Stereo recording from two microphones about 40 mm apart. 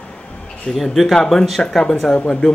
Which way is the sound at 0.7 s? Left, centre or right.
Centre.